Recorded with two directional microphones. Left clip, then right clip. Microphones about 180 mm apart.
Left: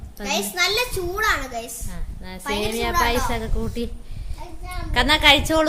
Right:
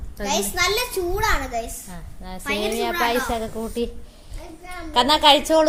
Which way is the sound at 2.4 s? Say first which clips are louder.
Right 1 dB; 30° left (ahead or behind).